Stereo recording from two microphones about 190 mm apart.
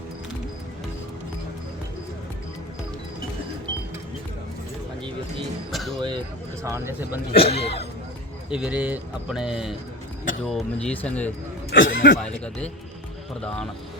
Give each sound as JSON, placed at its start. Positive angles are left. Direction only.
{"t": 5.7, "sound": "a sound", "side_deg": 0}
{"t": 6.6, "sound": "speech", "side_deg": -15}
{"t": 7.3, "sound": "speech", "side_deg": 30}
{"t": 8.4, "sound": "speech", "side_deg": -5}
{"t": 11.7, "sound": "speech", "side_deg": 75}